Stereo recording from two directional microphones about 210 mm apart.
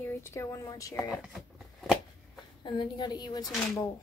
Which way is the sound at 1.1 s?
Centre (ahead or behind).